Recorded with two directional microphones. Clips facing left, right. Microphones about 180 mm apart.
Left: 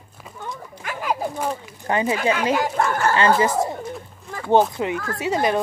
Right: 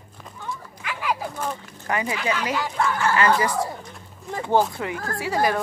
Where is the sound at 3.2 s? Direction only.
25° left (ahead or behind).